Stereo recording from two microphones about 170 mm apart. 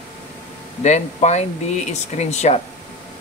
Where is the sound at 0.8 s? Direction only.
40° left (ahead or behind).